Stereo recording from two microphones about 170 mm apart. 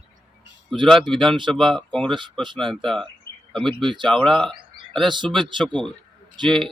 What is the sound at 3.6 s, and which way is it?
Speech, 30° right (ahead or behind).